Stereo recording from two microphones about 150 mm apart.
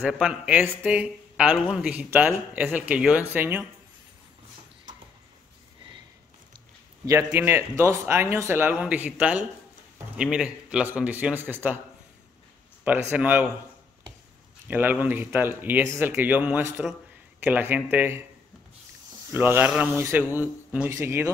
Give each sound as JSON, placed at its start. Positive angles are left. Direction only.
{"t": 0.0, "sound": "speech", "side_deg": -10}
{"t": 7.2, "sound": "a man's voice", "side_deg": -15}
{"t": 12.8, "sound": "speech", "side_deg": -10}
{"t": 14.7, "sound": "speech", "side_deg": -10}
{"t": 19.3, "sound": "speech", "side_deg": -15}